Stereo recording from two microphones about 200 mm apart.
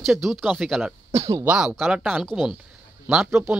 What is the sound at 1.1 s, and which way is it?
Speech, 15° right (ahead or behind).